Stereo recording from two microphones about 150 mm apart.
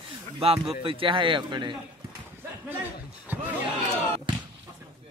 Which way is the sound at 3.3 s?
10° right (ahead or behind).